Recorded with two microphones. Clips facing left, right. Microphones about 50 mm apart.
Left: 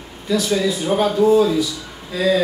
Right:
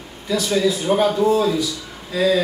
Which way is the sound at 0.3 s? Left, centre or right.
Centre.